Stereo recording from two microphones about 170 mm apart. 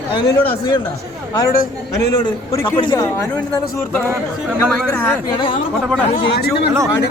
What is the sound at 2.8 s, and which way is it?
Speech, 25° left (ahead or behind).